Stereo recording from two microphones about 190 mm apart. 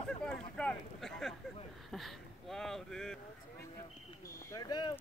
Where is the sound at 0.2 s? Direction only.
5° left (ahead or behind).